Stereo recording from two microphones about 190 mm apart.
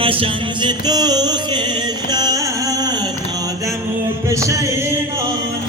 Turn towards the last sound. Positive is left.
turn(degrees=-15)  # may be behind; listen again after turning